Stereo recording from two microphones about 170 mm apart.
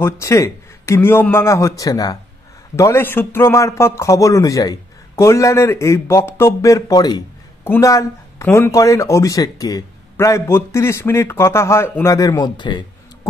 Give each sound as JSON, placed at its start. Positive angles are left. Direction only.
{"t": 0.0, "sound": "speech", "side_deg": 15}